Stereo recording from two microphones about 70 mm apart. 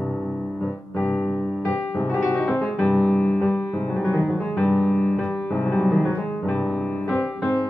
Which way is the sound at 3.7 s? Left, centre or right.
Centre.